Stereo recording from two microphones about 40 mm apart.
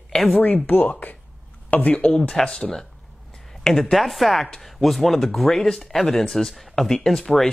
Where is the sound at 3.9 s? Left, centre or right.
Centre.